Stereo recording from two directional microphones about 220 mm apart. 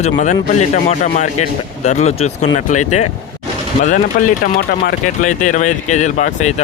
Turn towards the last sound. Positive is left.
turn(degrees=30)  # may be behind; listen again after turning